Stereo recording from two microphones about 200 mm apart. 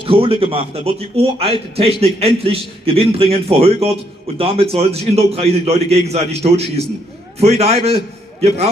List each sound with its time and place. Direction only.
0.0 s a man's voice: 25° right (ahead or behind)